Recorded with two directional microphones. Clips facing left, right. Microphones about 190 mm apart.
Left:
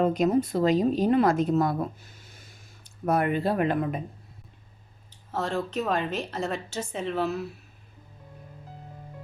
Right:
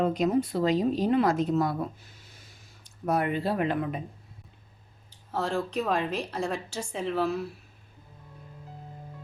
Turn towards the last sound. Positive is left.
turn(degrees=5)  # may be behind; listen again after turning